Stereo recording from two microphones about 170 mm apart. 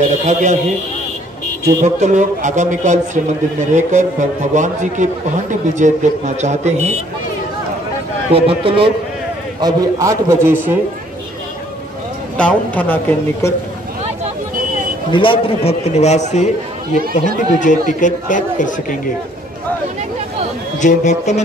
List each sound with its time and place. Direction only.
0.3 s a man's voice: 45° right (ahead or behind)
1.8 s a man's voice: 45° right (ahead or behind)
8.3 s a man's voice: 35° right (ahead or behind)
9.6 s a man's voice: 20° right (ahead or behind)
12.4 s a woman's voice: 10° left (ahead or behind)
15.0 s a man's voice: 30° left (ahead or behind); by 18.7 s 50° left (ahead or behind)
20.8 s speech: 45° left (ahead or behind)